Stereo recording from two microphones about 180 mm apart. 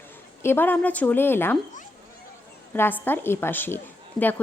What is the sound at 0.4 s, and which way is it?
A woman's voice, 10° left (ahead or behind).